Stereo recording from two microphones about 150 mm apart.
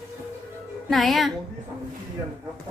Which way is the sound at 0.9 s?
Centre (ahead or behind).